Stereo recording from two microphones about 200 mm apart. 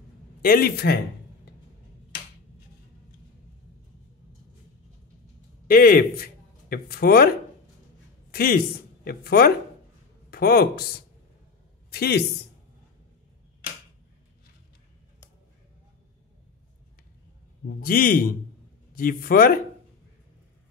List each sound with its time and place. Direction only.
0.4 s speech: 50° left (ahead or behind)
5.7 s a man's voice: 45° left (ahead or behind)
8.3 s speech: 50° left (ahead or behind)
17.7 s speech: 45° left (ahead or behind)